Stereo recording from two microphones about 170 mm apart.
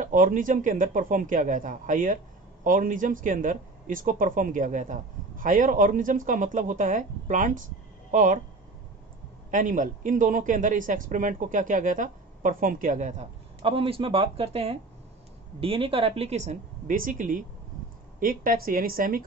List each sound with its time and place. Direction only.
0.0 s a woman's voice: 50° right (ahead or behind)
9.5 s a woman's voice: 50° right (ahead or behind)